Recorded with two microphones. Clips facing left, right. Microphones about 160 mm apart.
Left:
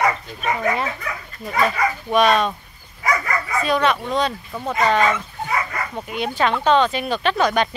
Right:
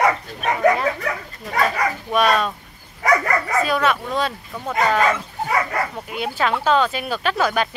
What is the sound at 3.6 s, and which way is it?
Speech, 5° right (ahead or behind).